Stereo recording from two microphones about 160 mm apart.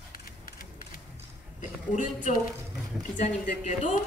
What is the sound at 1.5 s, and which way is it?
Speech, 50° left (ahead or behind).